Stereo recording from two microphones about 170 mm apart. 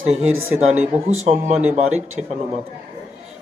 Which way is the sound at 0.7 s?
10° right (ahead or behind).